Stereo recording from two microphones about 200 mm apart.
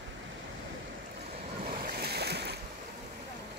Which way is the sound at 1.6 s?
50° right (ahead or behind).